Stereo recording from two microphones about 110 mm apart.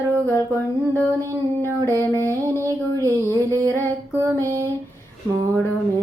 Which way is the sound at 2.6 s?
30° right (ahead or behind).